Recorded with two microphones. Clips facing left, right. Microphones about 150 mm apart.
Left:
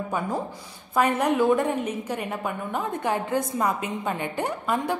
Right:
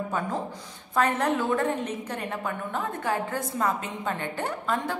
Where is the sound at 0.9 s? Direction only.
10° left (ahead or behind).